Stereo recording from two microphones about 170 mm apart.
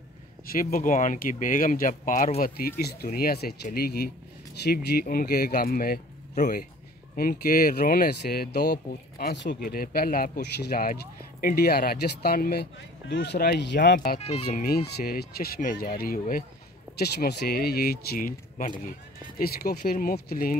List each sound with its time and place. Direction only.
0.5 s speech: 55° left (ahead or behind)
6.3 s a man's voice: 45° left (ahead or behind)
7.2 s speech: 60° left (ahead or behind)
9.2 s speech: 85° left
9.7 s speech: 60° left (ahead or behind)
13.1 s speech: 80° left
14.2 s speech: 40° left (ahead or behind)
14.6 s speech: 70° left (ahead or behind)
17.0 s speech: 70° left (ahead or behind)